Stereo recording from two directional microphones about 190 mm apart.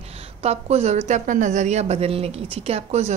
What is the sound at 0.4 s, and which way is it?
A woman's voice, 35° right (ahead or behind).